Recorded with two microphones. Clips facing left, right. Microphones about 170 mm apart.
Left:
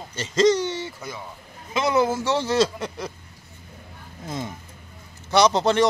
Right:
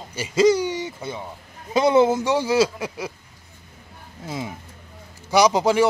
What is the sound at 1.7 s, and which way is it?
Speech, 25° right (ahead or behind).